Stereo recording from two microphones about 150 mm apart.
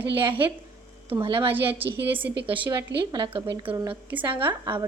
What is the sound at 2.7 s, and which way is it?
A woman's voice, 25° right (ahead or behind).